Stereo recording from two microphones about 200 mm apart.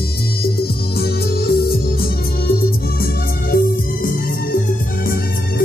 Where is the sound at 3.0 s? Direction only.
45° left (ahead or behind).